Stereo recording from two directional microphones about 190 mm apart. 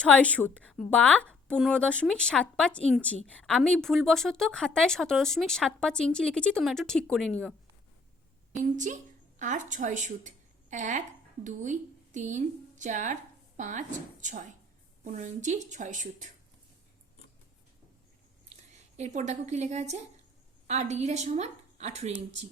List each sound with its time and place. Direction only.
0.0 s a woman's voice: 5° left (ahead or behind)
8.5 s a woman's voice: 40° right (ahead or behind)
18.7 s a woman's voice: 40° right (ahead or behind)